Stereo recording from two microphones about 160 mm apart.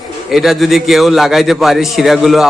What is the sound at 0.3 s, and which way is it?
A man's voice, centre (ahead or behind).